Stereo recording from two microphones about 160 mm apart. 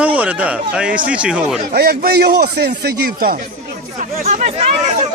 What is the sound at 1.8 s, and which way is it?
Speech, 80° right.